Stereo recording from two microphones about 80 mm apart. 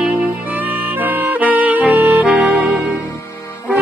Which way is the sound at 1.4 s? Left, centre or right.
Right.